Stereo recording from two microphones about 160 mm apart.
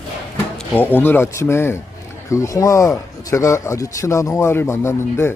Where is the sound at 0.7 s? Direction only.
10° left (ahead or behind).